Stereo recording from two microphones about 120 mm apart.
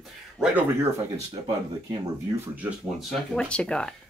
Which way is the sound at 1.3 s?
40° right (ahead or behind).